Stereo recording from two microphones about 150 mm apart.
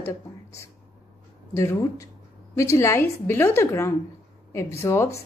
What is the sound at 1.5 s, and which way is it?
A woman's voice, 20° left (ahead or behind).